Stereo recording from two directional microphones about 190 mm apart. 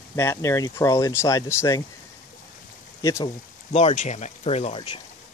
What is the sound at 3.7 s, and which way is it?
Speech, 35° left (ahead or behind).